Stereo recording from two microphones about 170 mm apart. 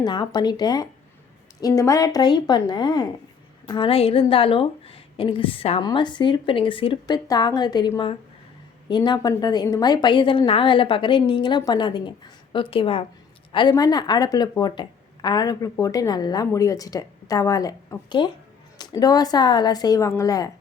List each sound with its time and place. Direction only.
0.0 s speech: 25° left (ahead or behind)